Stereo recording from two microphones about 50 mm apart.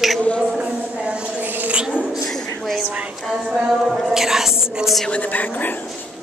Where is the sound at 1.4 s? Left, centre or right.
Right.